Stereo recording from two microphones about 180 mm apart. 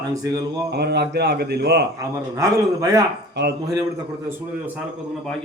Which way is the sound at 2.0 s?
20° right (ahead or behind).